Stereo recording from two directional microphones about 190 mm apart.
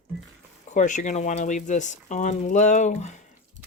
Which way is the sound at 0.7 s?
40° left (ahead or behind).